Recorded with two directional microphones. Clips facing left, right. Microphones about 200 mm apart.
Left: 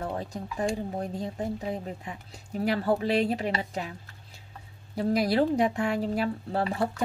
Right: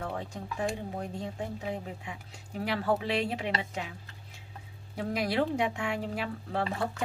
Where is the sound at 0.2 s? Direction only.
40° left (ahead or behind).